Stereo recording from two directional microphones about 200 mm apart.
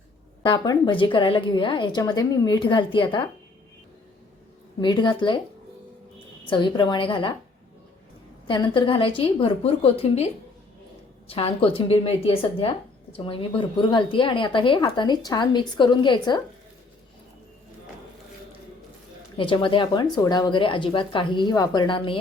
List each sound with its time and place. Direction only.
0.4 s speech: 20° left (ahead or behind)
4.8 s speech: 25° left (ahead or behind)
6.5 s speech: 25° left (ahead or behind)
8.4 s speech: 25° left (ahead or behind)
11.3 s speech: 30° left (ahead or behind)
19.4 s speech: 25° left (ahead or behind)